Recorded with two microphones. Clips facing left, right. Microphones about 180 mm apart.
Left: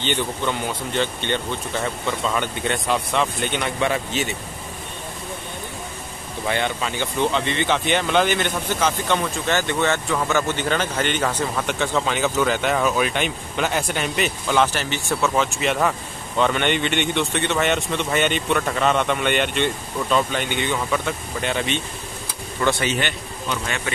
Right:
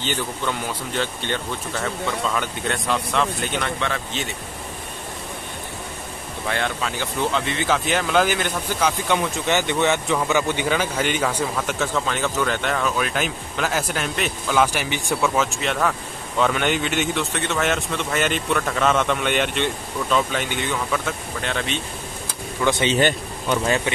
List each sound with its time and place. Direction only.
0.0 s speech: 5° right (ahead or behind)
6.4 s speech: centre (ahead or behind)
11.9 s speech: 5° left (ahead or behind); by 15.3 s 15° right (ahead or behind)
15.3 s speech: centre (ahead or behind)
22.7 s speech: 20° right (ahead or behind)
22.9 s speech: 40° right (ahead or behind)